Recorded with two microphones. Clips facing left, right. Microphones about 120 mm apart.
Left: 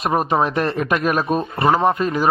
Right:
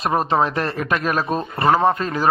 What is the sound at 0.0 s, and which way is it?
A man's voice, 15° left (ahead or behind).